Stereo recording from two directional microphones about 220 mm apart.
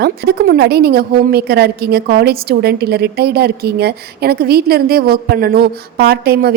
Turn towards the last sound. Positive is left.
turn(degrees=-45)  # may be behind; listen again after turning